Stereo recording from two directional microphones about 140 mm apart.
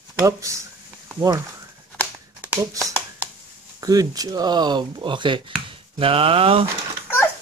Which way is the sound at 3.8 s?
25° right (ahead or behind).